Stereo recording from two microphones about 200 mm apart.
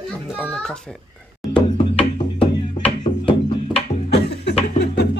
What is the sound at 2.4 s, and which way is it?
Music, 25° left (ahead or behind).